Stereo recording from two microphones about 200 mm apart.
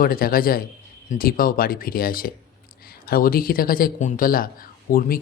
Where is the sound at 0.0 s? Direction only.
45° left (ahead or behind).